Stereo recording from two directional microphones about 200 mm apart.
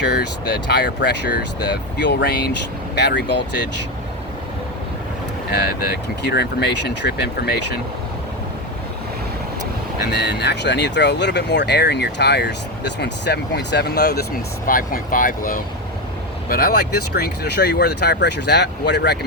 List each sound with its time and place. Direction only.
0.0 s speech: 55° left (ahead or behind)
5.5 s speech: 50° left (ahead or behind)
10.0 s speech: 55° left (ahead or behind)